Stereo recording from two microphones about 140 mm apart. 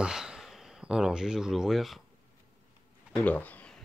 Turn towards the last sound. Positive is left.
turn(degrees=10)  # may be behind; listen again after turning